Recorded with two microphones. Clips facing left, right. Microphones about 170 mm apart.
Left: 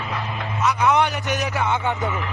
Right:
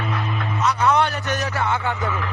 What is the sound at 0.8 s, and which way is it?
Speech, 15° left (ahead or behind).